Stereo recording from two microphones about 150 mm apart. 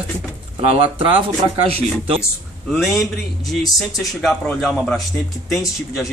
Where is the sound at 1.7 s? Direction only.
40° right (ahead or behind).